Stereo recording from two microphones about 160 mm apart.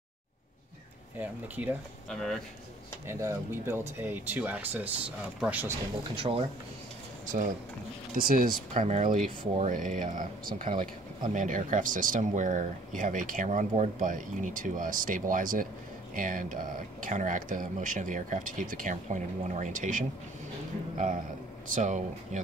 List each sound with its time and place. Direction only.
2.0 s speech: centre (ahead or behind)
3.1 s speech: 15° right (ahead or behind)
6.1 s speech: 35° right (ahead or behind)
8.1 s speech: 60° right (ahead or behind)
8.8 s speech: 50° right (ahead or behind)
21.7 s speech: 50° right (ahead or behind)